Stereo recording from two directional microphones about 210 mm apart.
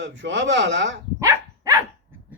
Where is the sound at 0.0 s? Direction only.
60° right (ahead or behind).